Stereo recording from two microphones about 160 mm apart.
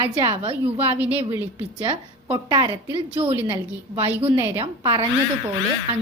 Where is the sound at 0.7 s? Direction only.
10° right (ahead or behind).